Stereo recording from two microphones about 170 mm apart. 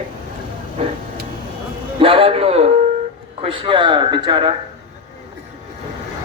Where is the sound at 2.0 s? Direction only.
35° right (ahead or behind).